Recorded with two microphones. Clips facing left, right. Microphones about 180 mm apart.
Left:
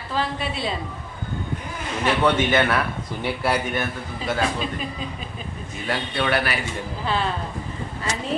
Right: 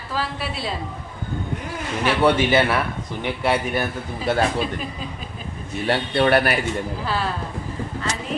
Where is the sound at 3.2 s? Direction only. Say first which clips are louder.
Right 2 dB; centre (ahead or behind).